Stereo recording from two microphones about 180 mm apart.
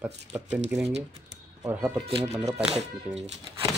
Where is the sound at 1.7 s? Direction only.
5° right (ahead or behind).